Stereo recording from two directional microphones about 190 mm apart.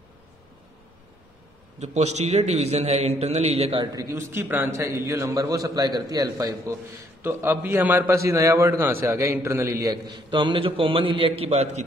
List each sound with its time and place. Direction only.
1.8 s a man's voice: 35° right (ahead or behind)
3.8 s a man's voice: 20° right (ahead or behind); by 11.8 s 35° right (ahead or behind)